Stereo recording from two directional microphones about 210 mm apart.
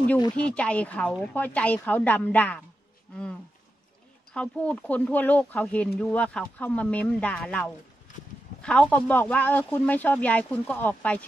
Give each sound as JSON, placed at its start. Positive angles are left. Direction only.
{"t": 0.5, "sound": "speech", "side_deg": 5}
{"t": 4.3, "sound": "speech", "side_deg": 5}